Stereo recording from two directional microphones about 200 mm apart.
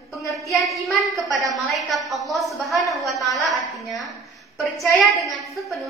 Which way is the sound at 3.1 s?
15° left (ahead or behind).